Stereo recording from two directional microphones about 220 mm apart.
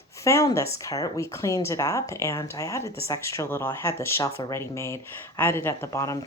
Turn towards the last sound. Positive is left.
turn(degrees=15)  # may be behind; listen again after turning